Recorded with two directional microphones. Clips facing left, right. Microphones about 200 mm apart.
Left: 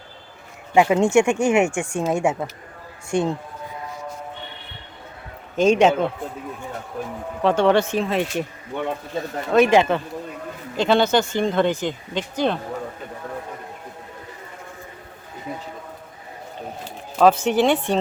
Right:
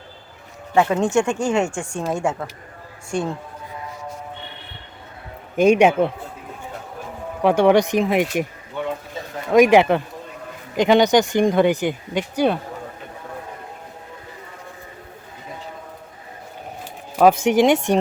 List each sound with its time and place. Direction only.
0.7 s a woman's voice: 10° left (ahead or behind)
5.5 s speech: 10° right (ahead or behind)
7.4 s speech: 15° right (ahead or behind)
9.5 s speech: 10° right (ahead or behind)
17.2 s speech: 10° right (ahead or behind)